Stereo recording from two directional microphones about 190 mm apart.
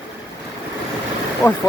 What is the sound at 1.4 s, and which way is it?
Speech, 15° left (ahead or behind).